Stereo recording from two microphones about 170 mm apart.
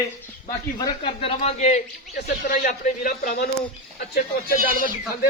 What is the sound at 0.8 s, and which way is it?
A man's voice, 30° left (ahead or behind).